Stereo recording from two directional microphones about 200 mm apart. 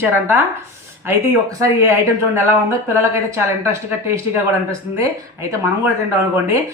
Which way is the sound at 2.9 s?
15° right (ahead or behind).